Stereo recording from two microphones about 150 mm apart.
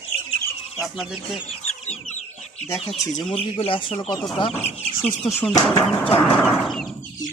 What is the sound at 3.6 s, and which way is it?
Speech, 35° left (ahead or behind).